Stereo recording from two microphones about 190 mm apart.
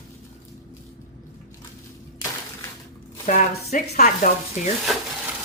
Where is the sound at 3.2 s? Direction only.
40° left (ahead or behind).